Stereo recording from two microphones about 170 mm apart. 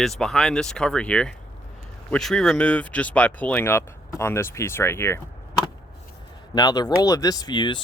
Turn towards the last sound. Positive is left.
turn(degrees=25)  # may be behind; listen again after turning